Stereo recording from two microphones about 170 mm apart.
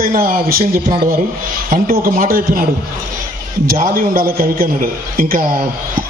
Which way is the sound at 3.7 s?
55° right (ahead or behind).